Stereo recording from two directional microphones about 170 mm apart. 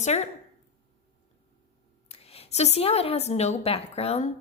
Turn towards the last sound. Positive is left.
turn(degrees=35)  # may be behind; listen again after turning